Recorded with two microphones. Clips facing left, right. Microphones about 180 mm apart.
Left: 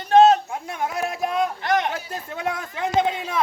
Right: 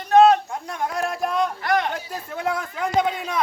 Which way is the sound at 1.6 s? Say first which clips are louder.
Even; 20° left (ahead or behind).